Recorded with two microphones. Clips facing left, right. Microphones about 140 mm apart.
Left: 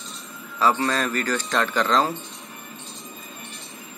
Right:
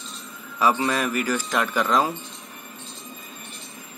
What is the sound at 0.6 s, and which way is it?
A man's voice, 15° right (ahead or behind).